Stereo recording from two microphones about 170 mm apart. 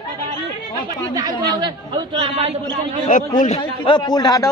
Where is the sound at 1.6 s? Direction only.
25° right (ahead or behind).